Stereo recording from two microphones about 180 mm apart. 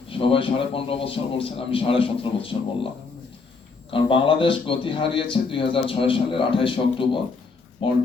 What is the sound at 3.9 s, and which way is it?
Speech, 30° left (ahead or behind).